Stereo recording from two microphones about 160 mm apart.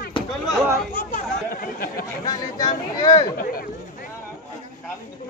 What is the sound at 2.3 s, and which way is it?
Speech, 25° left (ahead or behind).